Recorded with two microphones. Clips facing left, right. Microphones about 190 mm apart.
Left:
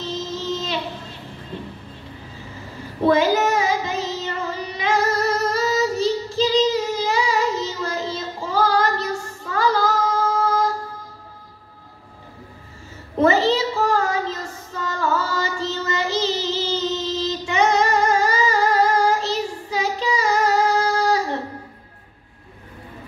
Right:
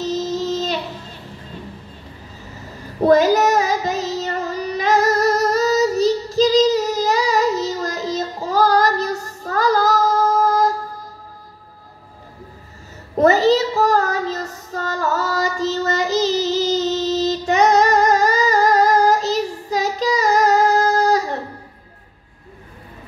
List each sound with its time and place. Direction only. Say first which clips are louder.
0.0 s a sound: right 6 dB; 40° right (ahead or behind)
3.0 s child singing: right 4 dB; 40° right (ahead or behind)
13.2 s child singing: right 3 dB; 40° right (ahead or behind)